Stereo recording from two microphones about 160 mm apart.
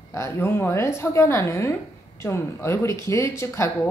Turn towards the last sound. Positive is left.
turn(degrees=15)  # may be behind; listen again after turning